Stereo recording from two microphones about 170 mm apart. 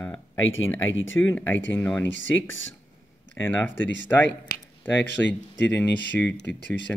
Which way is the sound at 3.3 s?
10° left (ahead or behind).